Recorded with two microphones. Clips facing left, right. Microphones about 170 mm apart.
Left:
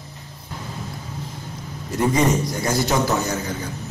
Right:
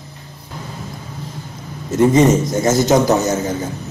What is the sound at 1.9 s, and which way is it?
Speech, 25° right (ahead or behind).